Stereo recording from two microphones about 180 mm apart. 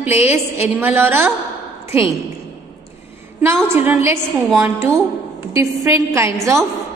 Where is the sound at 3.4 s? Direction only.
15° right (ahead or behind).